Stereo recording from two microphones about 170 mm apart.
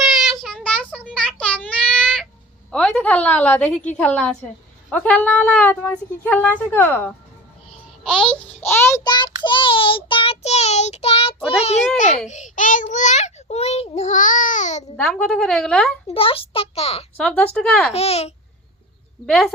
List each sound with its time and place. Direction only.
0.0 s child singing: centre (ahead or behind)
2.7 s a woman's voice: 5° left (ahead or behind)
9.0 s child singing: 25° left (ahead or behind)
11.9 s a child's voice: 45° left (ahead or behind)
14.9 s a woman's voice: 5° left (ahead or behind)
16.0 s child singing: 35° left (ahead or behind)
17.2 s speech: 10° left (ahead or behind)
17.9 s child singing: 35° left (ahead or behind)
19.2 s speech: 5° left (ahead or behind)